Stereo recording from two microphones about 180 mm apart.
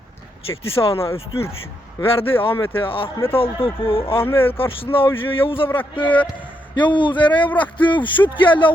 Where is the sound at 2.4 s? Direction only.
30° left (ahead or behind).